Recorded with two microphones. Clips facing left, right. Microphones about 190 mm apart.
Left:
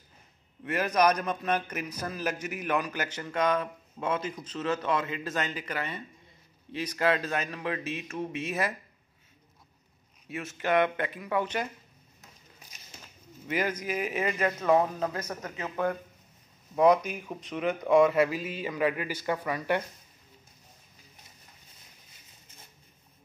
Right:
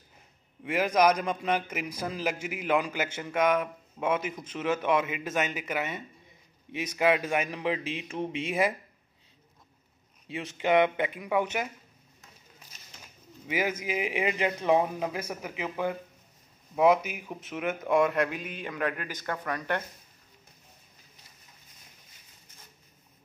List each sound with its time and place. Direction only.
0.7 s a man's voice: 10° right (ahead or behind)
10.2 s a man's voice: 20° right (ahead or behind)
13.5 s a man's voice: 10° right (ahead or behind); by 19.8 s 5° left (ahead or behind)